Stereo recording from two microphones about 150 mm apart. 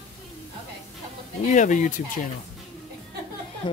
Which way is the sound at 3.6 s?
30° left (ahead or behind).